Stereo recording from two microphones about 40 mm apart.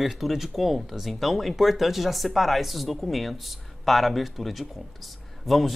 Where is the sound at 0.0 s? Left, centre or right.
Centre.